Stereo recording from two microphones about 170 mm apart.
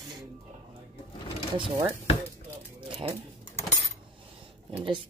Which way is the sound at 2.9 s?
35° right (ahead or behind).